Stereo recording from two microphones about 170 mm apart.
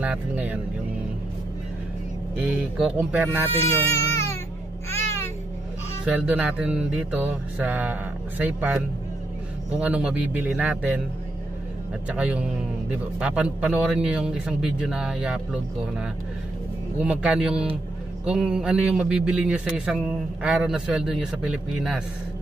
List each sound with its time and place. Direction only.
0.0 s mantra: 10° right (ahead or behind)
3.1 s mantra: 10° right (ahead or behind)
3.6 s baby cry: 15° left (ahead or behind)
4.9 s babbling: 15° left (ahead or behind)
6.2 s mantra: 5° right (ahead or behind)
12.1 s mantra: 5° right (ahead or behind)
13.2 s a man's voice: 5° right (ahead or behind)
17.0 s mantra: 5° right (ahead or behind)
18.2 s a man's voice: 5° right (ahead or behind)